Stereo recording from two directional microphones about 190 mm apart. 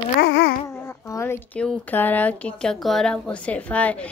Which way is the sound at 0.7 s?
15° left (ahead or behind).